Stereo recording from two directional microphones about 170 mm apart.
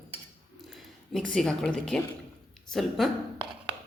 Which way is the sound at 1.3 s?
5° left (ahead or behind).